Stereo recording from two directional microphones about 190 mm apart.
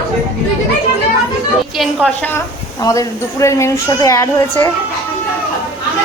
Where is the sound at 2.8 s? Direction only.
15° left (ahead or behind).